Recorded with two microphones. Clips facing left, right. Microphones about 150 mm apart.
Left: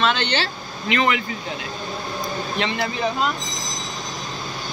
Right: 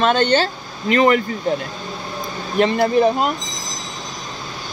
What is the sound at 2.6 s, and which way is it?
Speech, 45° right (ahead or behind).